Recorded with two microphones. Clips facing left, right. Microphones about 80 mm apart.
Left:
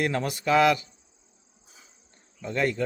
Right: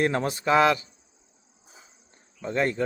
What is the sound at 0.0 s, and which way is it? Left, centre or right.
Speech, right.